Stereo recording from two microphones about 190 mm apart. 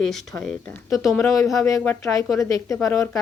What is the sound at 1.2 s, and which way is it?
Speech, 15° left (ahead or behind).